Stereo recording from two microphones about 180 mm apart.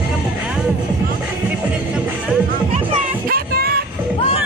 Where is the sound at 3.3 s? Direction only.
60° right (ahead or behind).